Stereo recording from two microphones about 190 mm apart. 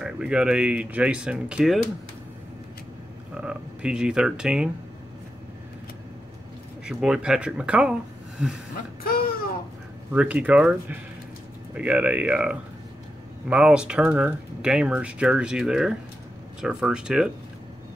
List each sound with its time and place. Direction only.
0.0 s speech: 5° right (ahead or behind)
3.3 s speech: 5° right (ahead or behind)
6.9 s speech: 5° right (ahead or behind)
9.0 s a sound: 50° left (ahead or behind)
10.1 s speech: 5° right (ahead or behind)